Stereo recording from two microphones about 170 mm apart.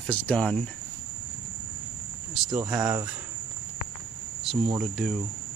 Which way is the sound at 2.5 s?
20° right (ahead or behind).